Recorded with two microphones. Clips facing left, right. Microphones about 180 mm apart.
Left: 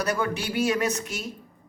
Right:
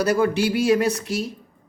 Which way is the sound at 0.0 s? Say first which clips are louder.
Right 7 dB; 30° right (ahead or behind).